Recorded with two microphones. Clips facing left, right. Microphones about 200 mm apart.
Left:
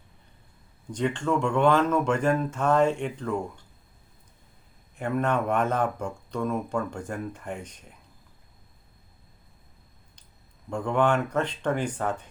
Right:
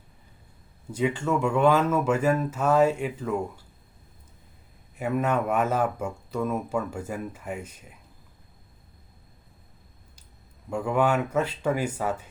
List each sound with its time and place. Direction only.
0.9 s speech: 5° right (ahead or behind)
4.9 s speech: 5° right (ahead or behind)
10.7 s speech: 5° right (ahead or behind)